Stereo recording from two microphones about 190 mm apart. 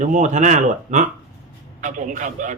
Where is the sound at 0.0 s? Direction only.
40° right (ahead or behind).